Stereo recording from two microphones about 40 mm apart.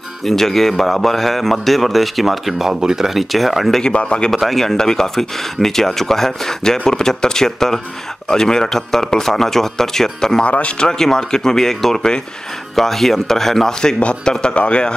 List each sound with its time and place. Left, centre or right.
0.2 s a man's voice: centre
3.2 s a man's voice: centre
3.8 s speech: left
4.3 s speech: centre
10.4 s speech: left
10.8 s speech: centre
13.9 s speech: left